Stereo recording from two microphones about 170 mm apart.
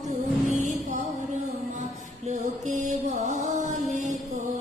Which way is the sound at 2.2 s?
45° right (ahead or behind).